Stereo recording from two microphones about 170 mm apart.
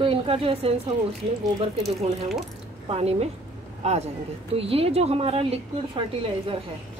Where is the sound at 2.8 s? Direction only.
35° right (ahead or behind).